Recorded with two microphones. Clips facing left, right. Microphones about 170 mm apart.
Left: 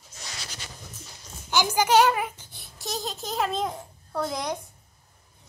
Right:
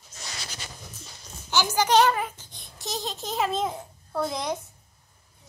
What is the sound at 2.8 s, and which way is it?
A child's voice, centre (ahead or behind).